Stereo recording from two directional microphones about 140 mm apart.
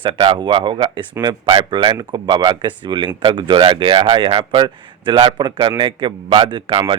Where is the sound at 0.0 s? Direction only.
35° right (ahead or behind).